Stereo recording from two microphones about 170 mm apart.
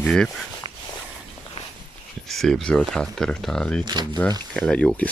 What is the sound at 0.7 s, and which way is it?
Walk, 30° right (ahead or behind).